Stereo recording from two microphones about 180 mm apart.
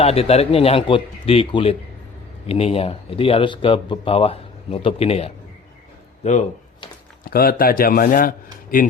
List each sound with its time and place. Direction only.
0.0 s speech: 35° left (ahead or behind)
7.3 s a man's voice: 55° left (ahead or behind)